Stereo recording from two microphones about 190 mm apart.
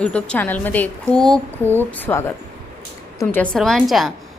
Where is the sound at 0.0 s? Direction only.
5° left (ahead or behind).